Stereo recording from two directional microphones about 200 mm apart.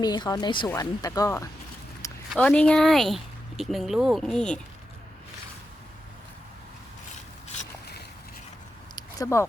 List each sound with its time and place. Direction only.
0.0 s speech: 20° left (ahead or behind)
2.3 s speech: 5° left (ahead or behind)
9.0 s a sound: 15° left (ahead or behind)